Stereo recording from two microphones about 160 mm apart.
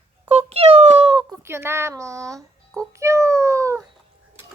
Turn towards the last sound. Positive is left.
turn(degrees=-20)  # may be behind; listen again after turning